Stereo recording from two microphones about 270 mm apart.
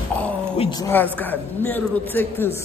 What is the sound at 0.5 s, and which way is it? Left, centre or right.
A woman's voice, centre.